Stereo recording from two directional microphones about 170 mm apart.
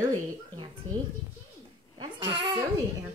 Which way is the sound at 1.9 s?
25° right (ahead or behind).